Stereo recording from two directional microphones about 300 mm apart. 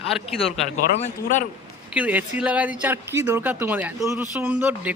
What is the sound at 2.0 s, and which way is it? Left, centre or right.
A woman's voice, centre.